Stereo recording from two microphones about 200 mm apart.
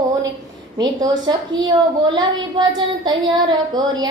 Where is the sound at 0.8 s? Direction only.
20° right (ahead or behind).